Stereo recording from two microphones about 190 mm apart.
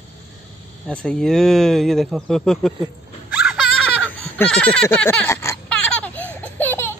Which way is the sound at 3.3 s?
5° right (ahead or behind).